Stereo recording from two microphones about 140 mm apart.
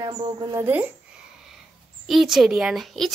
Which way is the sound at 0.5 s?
15° right (ahead or behind).